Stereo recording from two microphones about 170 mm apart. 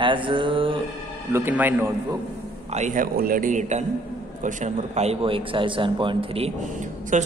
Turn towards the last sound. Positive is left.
turn(degrees=-45)  # may be behind; listen again after turning